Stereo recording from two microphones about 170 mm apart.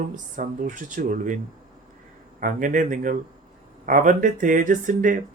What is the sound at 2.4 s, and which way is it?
Speech, 50° right (ahead or behind).